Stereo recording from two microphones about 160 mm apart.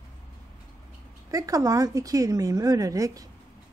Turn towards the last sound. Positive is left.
turn(degrees=-20)  # may be behind; listen again after turning